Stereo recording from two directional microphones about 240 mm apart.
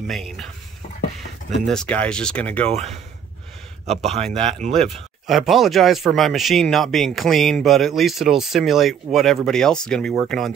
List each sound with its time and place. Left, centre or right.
0.0 s speech: centre
1.7 s speech: centre
2.7 s speech: right
5.2 s speech: centre